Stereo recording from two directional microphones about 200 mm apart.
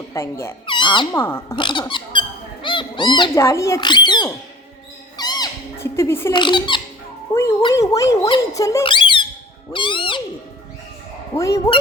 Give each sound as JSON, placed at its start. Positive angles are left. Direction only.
{"t": 0.1, "sound": "speech", "side_deg": 15}
{"t": 1.2, "sound": "speech", "side_deg": 10}
{"t": 1.5, "sound": "speech", "side_deg": 25}
{"t": 5.1, "sound": "cat", "side_deg": 20}
{"t": 6.3, "sound": "speech", "side_deg": 25}
{"t": 11.3, "sound": "speech", "side_deg": 15}